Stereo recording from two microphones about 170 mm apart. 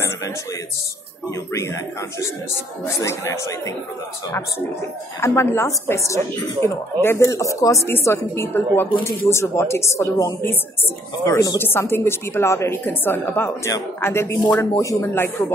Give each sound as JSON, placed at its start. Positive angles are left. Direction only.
{"t": 1.3, "sound": "a woman's voice", "side_deg": 15}
{"t": 5.2, "sound": "a woman's voice", "side_deg": 15}